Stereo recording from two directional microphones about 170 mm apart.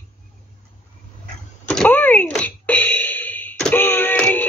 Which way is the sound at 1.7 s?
10° left (ahead or behind).